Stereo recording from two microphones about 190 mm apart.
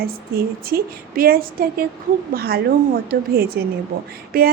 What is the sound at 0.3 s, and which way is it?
A woman's voice, 55° right (ahead or behind).